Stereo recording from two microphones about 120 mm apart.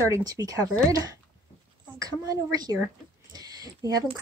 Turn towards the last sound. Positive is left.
turn(degrees=-30)  # may be behind; listen again after turning